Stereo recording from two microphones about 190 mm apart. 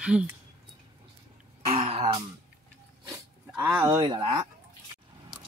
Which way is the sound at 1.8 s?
30° right (ahead or behind).